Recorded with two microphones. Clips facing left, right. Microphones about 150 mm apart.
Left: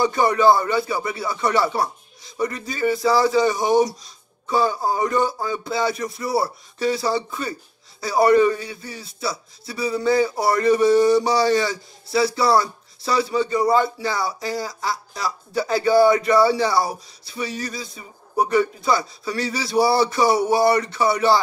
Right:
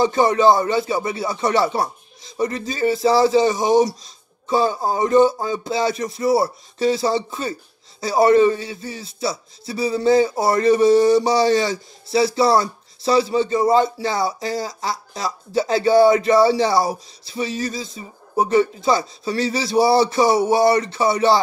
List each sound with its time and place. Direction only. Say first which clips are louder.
0.0 s speech: right 2 dB; 20° right (ahead or behind)